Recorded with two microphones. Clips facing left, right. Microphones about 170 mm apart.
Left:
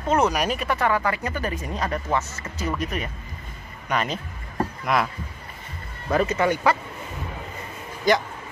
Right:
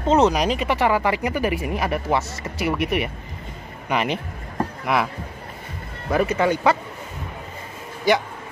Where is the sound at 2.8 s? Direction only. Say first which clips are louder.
Right 6 dB; 75° right (ahead or behind).